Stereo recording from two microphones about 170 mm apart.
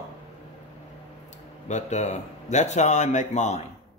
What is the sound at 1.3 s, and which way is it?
Speech, 45° left (ahead or behind).